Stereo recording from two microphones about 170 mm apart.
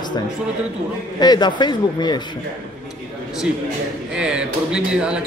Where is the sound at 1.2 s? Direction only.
25° left (ahead or behind).